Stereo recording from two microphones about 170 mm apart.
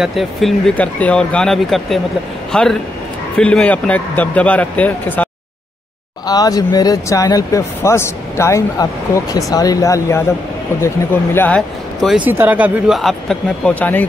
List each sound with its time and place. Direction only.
0.0 s speech: centre (ahead or behind)
6.2 s speech: 20° left (ahead or behind)
11.3 s speech: 10° left (ahead or behind)